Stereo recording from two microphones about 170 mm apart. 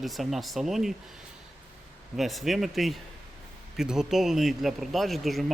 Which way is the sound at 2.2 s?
Centre (ahead or behind).